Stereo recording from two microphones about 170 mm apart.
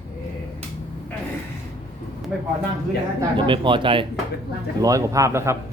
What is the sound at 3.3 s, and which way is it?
Speech, 30° right (ahead or behind).